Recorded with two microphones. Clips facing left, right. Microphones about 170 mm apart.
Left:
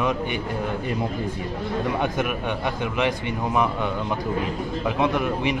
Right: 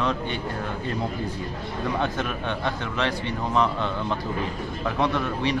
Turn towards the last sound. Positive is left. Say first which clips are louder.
# left 2 dB
turn(degrees=15)  # may be behind; listen again after turning